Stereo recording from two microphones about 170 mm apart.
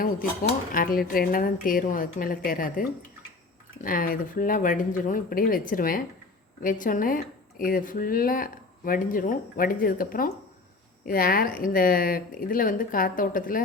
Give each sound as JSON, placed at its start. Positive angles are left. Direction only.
{"t": 0.7, "sound": "speech", "side_deg": 55}
{"t": 3.8, "sound": "speech", "side_deg": 55}